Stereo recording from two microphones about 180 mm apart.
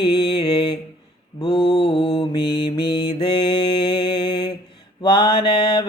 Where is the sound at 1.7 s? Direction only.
25° left (ahead or behind).